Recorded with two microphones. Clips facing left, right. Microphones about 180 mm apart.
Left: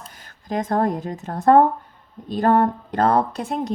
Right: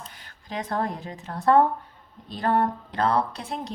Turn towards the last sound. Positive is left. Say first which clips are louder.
# left 8 dB
turn(degrees=50)  # may be behind; listen again after turning